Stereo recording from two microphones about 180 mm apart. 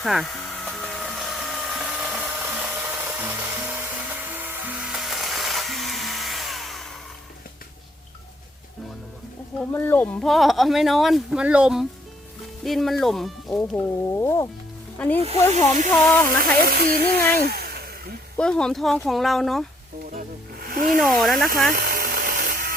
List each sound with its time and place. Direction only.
0.0 s hair dryer: centre (ahead or behind)
9.6 s speech: 10° left (ahead or behind)
13.6 s speech: 15° left (ahead or behind)
15.2 s speech: 35° right (ahead or behind)
15.9 s speech: 10° left (ahead or behind)
17.5 s a sound: 60° right (ahead or behind)
18.3 s speech: 5° left (ahead or behind)
20.1 s snake: 55° right (ahead or behind)
21.0 s speech: centre (ahead or behind)
21.7 s a sound: 55° right (ahead or behind)